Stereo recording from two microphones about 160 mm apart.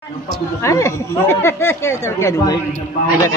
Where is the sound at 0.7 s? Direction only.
20° left (ahead or behind).